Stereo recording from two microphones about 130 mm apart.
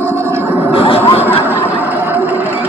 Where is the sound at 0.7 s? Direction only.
45° left (ahead or behind).